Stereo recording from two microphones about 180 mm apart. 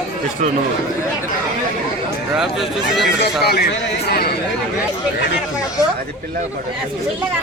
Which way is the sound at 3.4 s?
60° left (ahead or behind).